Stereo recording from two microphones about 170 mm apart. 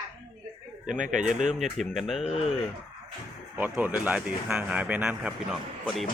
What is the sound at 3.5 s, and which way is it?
Speech, 10° right (ahead or behind).